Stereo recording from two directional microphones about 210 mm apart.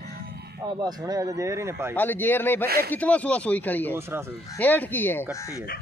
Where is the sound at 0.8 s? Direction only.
15° right (ahead or behind).